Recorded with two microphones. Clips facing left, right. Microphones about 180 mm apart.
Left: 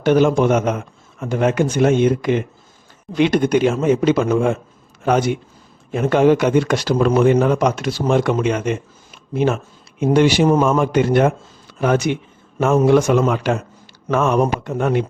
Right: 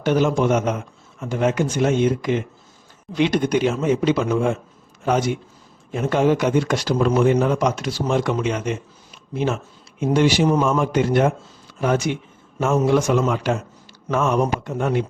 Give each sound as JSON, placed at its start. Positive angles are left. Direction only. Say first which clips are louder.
{"t": 0.0, "sound": "speech", "louder": "left 4 dB", "side_deg": 60}